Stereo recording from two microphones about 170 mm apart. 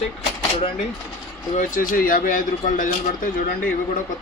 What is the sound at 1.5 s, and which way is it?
Speech, 50° left (ahead or behind).